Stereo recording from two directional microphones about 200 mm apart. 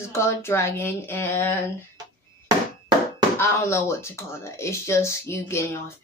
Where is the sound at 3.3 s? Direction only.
15° left (ahead or behind).